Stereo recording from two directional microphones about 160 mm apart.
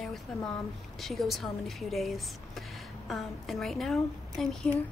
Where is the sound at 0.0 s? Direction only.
Centre (ahead or behind).